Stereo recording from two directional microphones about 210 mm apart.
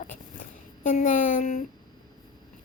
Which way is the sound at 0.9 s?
40° left (ahead or behind).